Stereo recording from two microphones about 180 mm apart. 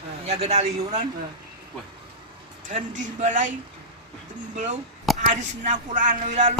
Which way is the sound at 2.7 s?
45° right (ahead or behind).